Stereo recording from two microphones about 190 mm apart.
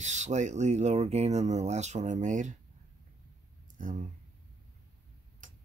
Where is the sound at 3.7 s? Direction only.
40° right (ahead or behind).